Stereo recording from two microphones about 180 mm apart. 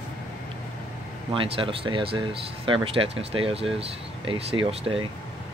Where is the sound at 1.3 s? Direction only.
30° right (ahead or behind).